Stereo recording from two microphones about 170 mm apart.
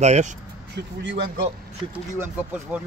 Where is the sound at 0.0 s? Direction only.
45° right (ahead or behind).